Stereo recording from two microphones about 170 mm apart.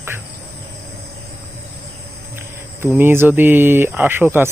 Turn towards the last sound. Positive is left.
turn(degrees=-15)  # may be behind; listen again after turning